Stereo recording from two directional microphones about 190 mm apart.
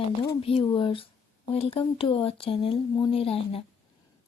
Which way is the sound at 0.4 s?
30° left (ahead or behind).